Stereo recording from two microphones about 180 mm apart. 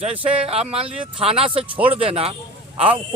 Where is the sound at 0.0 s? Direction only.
30° right (ahead or behind).